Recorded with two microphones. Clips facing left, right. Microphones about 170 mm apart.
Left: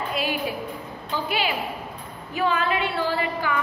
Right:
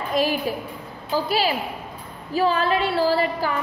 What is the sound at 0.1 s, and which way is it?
A woman's voice, 40° right (ahead or behind).